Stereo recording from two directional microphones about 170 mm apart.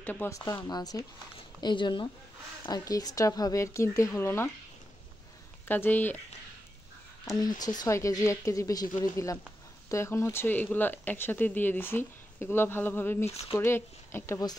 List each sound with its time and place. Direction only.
0.0 s speech: 10° left (ahead or behind)
5.7 s speech: 10° left (ahead or behind)
7.3 s speech: 25° left (ahead or behind)
13.3 s speech: 35° left (ahead or behind)
13.6 s speech: 15° left (ahead or behind)